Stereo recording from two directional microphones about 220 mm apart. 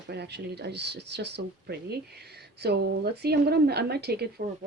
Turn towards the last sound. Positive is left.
turn(degrees=-45)  # may be behind; listen again after turning